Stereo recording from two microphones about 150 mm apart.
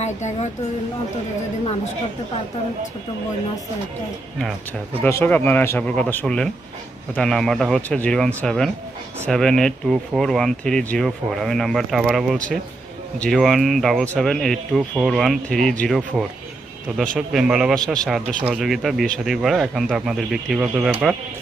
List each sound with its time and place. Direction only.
0.0 s speech: 50° left (ahead or behind)
5.0 s speech: 15° left (ahead or behind)
17.0 s speech: centre (ahead or behind)